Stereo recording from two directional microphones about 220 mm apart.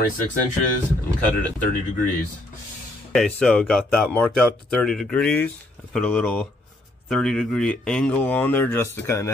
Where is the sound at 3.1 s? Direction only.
5° left (ahead or behind).